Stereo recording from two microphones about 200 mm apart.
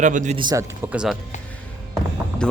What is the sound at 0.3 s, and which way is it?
Speech, 20° right (ahead or behind).